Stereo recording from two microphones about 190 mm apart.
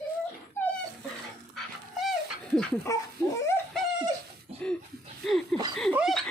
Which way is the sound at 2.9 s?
15° left (ahead or behind).